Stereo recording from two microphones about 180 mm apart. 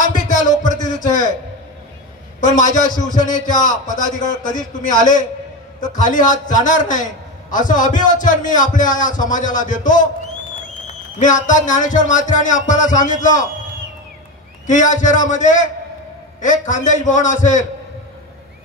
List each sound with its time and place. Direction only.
0.0 s a sound: 45° left (ahead or behind)
2.4 s a man's voice: 45° left (ahead or behind)
5.9 s a man's voice: 45° left (ahead or behind)
11.1 s a man's voice: 45° left (ahead or behind)
14.7 s a man's voice: 45° left (ahead or behind)